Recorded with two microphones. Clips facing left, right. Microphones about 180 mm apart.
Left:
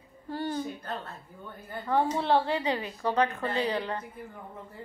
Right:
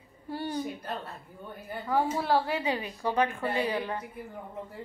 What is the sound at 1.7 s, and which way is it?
A woman's voice, 5° right (ahead or behind).